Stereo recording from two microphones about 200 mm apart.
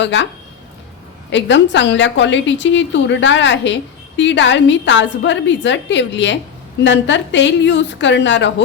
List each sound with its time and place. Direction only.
0.0 s a woman's voice: 65° left (ahead or behind)
1.3 s a woman's voice: 60° left (ahead or behind)